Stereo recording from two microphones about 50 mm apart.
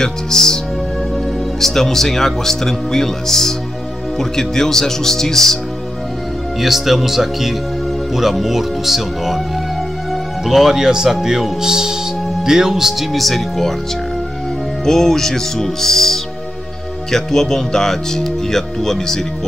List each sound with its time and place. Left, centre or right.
0.0 s speech: centre
6.6 s speech: centre
10.4 s speech: centre
13.2 s speech: centre
14.9 s speech: centre